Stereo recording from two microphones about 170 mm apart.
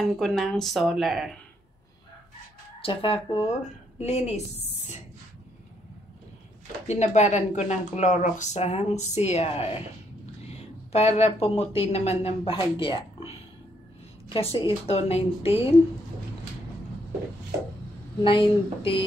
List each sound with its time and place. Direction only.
0.0 s speech: centre (ahead or behind)
2.8 s speech: 30° left (ahead or behind)
6.9 s speech: 40° left (ahead or behind)
10.9 s speech: 40° left (ahead or behind)
14.3 s speech: 30° left (ahead or behind)
18.2 s speech: 30° left (ahead or behind)